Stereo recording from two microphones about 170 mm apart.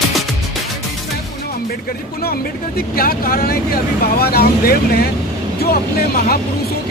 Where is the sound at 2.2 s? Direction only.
65° left (ahead or behind).